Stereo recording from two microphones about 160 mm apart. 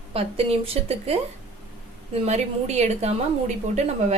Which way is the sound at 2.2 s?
45° right (ahead or behind).